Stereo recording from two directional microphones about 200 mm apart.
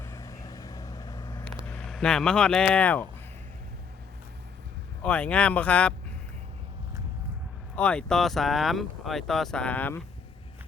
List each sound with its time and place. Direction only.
0.0 s vehicle: 15° left (ahead or behind)
1.6 s speech: 5° left (ahead or behind)
5.0 s speech: 5° left (ahead or behind)
7.8 s speech: 5° left (ahead or behind)